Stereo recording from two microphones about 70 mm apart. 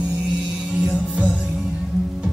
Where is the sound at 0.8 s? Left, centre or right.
Centre.